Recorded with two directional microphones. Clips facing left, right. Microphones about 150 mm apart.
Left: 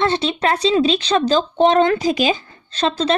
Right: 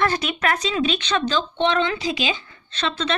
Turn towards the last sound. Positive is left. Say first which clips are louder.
# left 7 dB
turn(degrees=40)  # may be behind; listen again after turning